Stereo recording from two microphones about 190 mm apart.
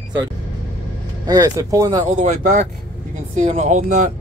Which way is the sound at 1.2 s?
20° right (ahead or behind).